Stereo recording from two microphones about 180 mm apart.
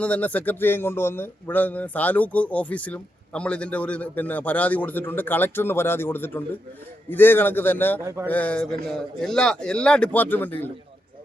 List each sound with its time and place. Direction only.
0.0 s speech: 5° left (ahead or behind)
8.0 s a sound: 15° right (ahead or behind)
8.3 s a man's voice: 10° left (ahead or behind)